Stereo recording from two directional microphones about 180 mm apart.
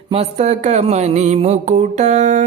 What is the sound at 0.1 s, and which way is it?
Mantra, 35° right (ahead or behind).